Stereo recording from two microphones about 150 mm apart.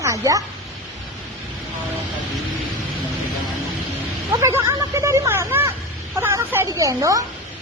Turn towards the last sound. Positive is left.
turn(degrees=-20)  # may be behind; listen again after turning